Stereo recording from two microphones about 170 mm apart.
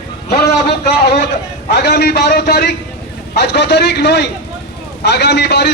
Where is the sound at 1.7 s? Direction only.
75° left (ahead or behind).